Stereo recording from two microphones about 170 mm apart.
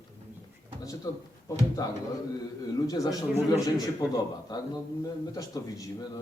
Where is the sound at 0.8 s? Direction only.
20° left (ahead or behind).